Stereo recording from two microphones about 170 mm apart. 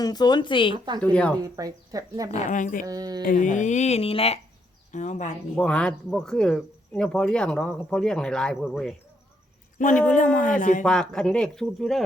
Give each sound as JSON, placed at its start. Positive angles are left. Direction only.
{"t": 0.0, "sound": "speech", "side_deg": 25}
{"t": 1.0, "sound": "speech", "side_deg": 5}
{"t": 1.4, "sound": "speech", "side_deg": -20}
{"t": 2.3, "sound": "speech", "side_deg": 45}
{"t": 2.8, "sound": "speech", "side_deg": -20}
{"t": 3.2, "sound": "speech", "side_deg": 50}
{"t": 4.9, "sound": "speech", "side_deg": 45}
{"t": 5.5, "sound": "speech", "side_deg": 5}
{"t": 9.7, "sound": "speech", "side_deg": 50}
{"t": 10.8, "sound": "speech", "side_deg": 5}